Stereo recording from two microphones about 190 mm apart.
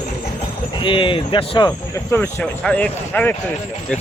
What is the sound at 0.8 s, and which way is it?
Speech, 25° left (ahead or behind).